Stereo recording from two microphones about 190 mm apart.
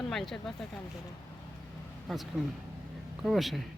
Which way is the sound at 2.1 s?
Centre (ahead or behind).